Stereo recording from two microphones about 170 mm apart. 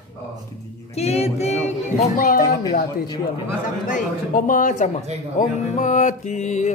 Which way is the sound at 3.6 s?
50° left (ahead or behind).